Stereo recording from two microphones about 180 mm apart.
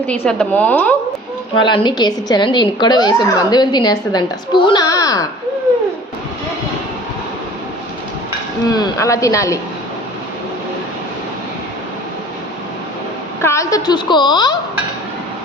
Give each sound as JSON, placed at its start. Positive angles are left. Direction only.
{"t": 0.1, "sound": "speech", "side_deg": 5}
{"t": 1.6, "sound": "a woman's voice", "side_deg": 25}
{"t": 8.7, "sound": "speech", "side_deg": 20}
{"t": 13.4, "sound": "a woman's voice", "side_deg": 15}